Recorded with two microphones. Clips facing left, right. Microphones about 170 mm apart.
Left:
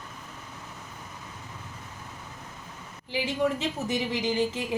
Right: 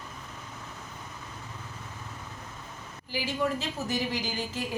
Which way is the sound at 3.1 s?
20° left (ahead or behind).